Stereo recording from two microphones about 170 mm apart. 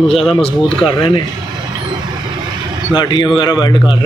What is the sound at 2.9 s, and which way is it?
Speech, 25° left (ahead or behind).